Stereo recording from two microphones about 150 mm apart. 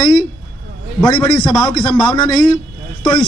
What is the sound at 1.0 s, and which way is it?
A man's voice, 30° left (ahead or behind).